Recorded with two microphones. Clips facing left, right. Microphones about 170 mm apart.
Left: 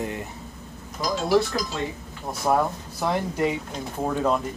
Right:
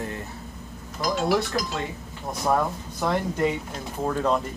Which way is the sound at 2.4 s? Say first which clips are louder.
Left 1 dB; 10° left (ahead or behind).